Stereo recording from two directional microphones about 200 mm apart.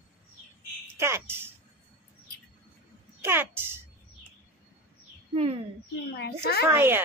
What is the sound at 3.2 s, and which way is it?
Speech, 10° right (ahead or behind).